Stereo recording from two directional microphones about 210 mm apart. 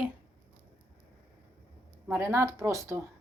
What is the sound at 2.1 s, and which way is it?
Speech, 10° right (ahead or behind).